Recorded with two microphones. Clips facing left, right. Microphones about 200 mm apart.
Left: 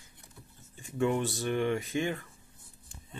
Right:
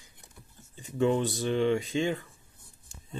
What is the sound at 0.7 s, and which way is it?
Speech, 20° right (ahead or behind).